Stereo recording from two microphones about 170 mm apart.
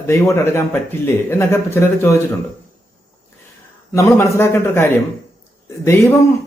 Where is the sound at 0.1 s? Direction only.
15° left (ahead or behind).